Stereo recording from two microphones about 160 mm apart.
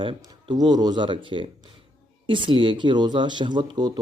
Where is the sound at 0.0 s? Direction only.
30° right (ahead or behind).